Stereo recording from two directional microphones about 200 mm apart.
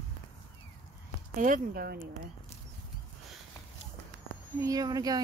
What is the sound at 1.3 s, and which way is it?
Speech, 40° right (ahead or behind).